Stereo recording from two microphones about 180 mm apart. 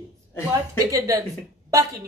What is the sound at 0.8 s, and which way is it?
Speech, 20° right (ahead or behind).